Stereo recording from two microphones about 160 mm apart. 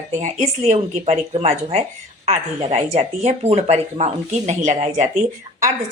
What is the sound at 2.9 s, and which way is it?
A woman's voice, 45° right (ahead or behind).